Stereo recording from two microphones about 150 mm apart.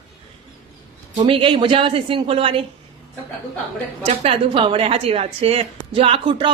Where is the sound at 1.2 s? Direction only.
35° right (ahead or behind).